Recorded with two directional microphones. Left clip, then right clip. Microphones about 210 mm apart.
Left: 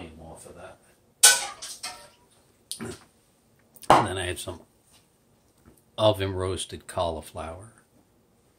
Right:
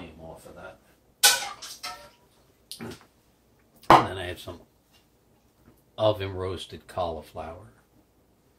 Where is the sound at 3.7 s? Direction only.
40° left (ahead or behind).